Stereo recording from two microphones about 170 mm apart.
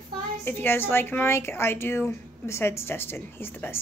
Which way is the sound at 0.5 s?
10° left (ahead or behind).